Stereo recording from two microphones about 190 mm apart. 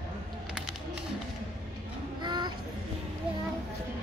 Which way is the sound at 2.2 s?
25° right (ahead or behind).